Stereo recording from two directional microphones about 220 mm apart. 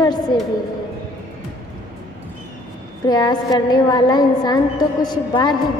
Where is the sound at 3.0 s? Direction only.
20° left (ahead or behind).